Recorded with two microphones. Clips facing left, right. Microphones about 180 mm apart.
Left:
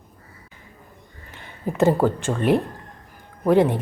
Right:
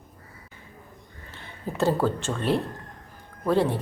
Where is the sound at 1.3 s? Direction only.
15° left (ahead or behind).